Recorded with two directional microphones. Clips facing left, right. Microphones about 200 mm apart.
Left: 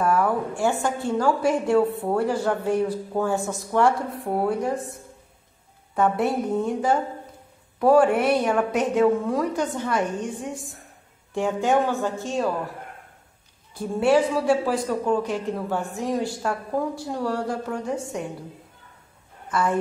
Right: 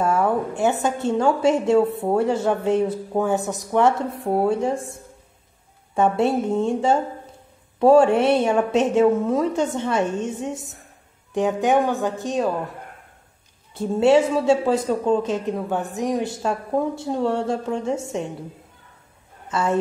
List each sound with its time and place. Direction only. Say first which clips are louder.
0.0 s a woman's voice: right 2 dB; 25° right (ahead or behind)
5.9 s a woman's voice: right 3 dB; 25° right (ahead or behind)
13.7 s a woman's voice: right 3 dB; 25° right (ahead or behind)
19.5 s a woman's voice: right 2 dB; 25° right (ahead or behind)